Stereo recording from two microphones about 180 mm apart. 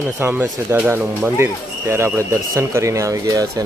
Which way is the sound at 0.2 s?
10° right (ahead or behind).